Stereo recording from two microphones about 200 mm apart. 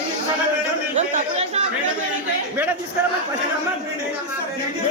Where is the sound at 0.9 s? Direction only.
35° right (ahead or behind).